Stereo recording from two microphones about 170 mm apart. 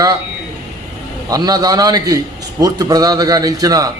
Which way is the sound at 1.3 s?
20° right (ahead or behind).